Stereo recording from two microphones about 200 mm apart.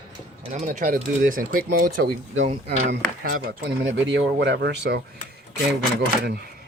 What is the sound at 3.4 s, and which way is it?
Speech, 55° right (ahead or behind).